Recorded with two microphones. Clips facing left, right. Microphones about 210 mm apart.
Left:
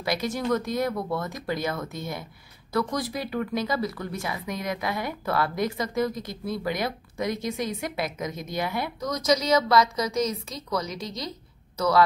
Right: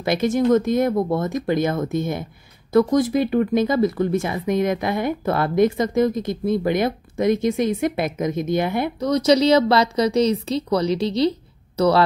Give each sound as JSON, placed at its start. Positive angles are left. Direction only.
{"t": 0.0, "sound": "speech", "side_deg": -25}
{"t": 7.9, "sound": "a woman's voice", "side_deg": -50}
{"t": 8.3, "sound": "a woman's voice", "side_deg": -25}